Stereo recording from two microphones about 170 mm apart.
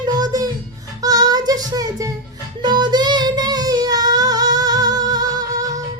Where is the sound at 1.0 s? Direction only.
20° right (ahead or behind).